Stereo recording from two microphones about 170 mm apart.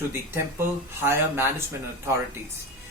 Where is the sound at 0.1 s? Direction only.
15° right (ahead or behind).